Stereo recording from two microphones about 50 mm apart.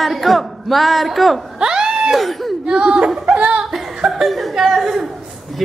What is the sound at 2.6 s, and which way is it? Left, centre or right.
Speech, centre.